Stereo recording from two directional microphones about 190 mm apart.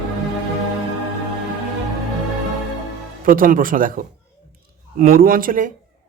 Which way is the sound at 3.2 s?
45° right (ahead or behind).